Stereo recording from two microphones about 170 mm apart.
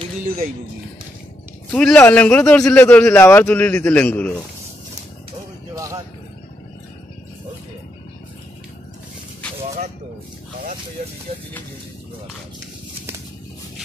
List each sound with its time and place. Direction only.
1.7 s a man's voice: 5° left (ahead or behind)
5.8 s a sound: 20° right (ahead or behind)
11.0 s speech: 40° right (ahead or behind)